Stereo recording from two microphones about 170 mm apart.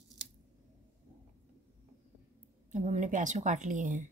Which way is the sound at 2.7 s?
45° right (ahead or behind).